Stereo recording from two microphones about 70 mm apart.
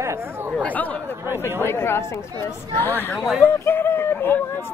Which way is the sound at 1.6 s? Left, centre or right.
Left.